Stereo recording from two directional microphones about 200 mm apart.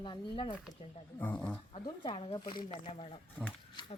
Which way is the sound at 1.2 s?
10° left (ahead or behind).